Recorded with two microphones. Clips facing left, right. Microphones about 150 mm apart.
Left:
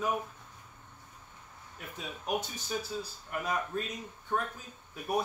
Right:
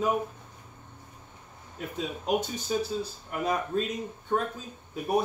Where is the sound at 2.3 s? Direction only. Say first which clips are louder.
Right 6 dB; 20° right (ahead or behind).